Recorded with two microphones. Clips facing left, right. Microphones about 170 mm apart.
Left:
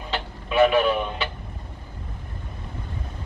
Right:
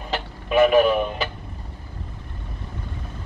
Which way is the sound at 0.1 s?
45° right (ahead or behind).